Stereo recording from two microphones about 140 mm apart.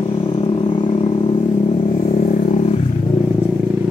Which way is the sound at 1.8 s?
45° left (ahead or behind).